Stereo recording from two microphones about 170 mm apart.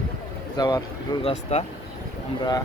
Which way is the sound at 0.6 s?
20° left (ahead or behind).